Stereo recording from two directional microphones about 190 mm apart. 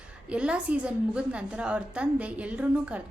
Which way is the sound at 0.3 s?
5° right (ahead or behind).